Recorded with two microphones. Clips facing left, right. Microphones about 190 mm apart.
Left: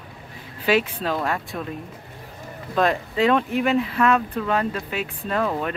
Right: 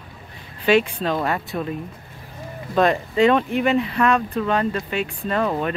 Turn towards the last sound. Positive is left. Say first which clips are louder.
# right 2 dB
turn(degrees=0)  # may be behind; listen again after turning